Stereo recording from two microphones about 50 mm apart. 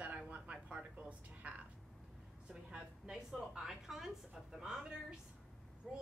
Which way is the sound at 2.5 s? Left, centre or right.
Centre.